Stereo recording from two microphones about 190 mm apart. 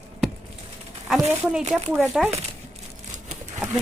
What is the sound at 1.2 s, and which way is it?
Speech, 10° right (ahead or behind).